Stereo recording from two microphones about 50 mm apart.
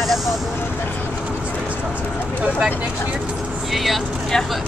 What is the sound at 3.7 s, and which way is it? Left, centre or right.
Speech, centre.